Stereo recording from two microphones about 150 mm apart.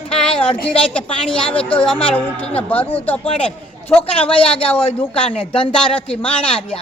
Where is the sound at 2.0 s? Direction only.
40° left (ahead or behind).